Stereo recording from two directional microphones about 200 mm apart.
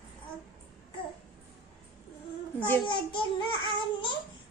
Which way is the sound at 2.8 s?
25° left (ahead or behind).